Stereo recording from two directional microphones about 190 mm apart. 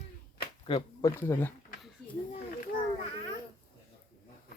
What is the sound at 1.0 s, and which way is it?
Speech, 10° left (ahead or behind).